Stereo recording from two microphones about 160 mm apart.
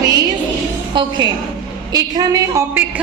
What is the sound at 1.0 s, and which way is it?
A woman's voice, 30° right (ahead or behind).